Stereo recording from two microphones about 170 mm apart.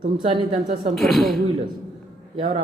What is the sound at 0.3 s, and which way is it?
Speech, 35° right (ahead or behind).